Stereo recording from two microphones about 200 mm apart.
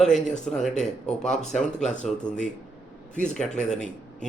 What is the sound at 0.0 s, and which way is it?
Speech, 5° left (ahead or behind).